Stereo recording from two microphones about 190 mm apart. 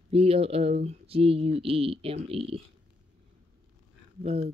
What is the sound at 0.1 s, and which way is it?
Speech, 30° right (ahead or behind).